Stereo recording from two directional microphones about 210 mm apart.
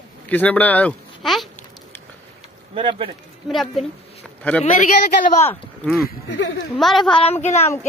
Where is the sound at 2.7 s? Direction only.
25° right (ahead or behind).